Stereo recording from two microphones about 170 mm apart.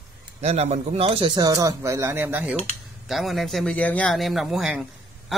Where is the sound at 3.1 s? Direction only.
Centre (ahead or behind).